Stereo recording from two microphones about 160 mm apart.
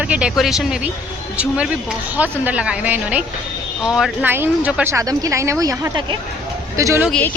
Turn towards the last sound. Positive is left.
turn(degrees=10)  # may be behind; listen again after turning